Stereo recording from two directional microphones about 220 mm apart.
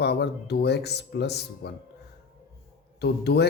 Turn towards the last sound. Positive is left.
turn(degrees=50)  # may be behind; listen again after turning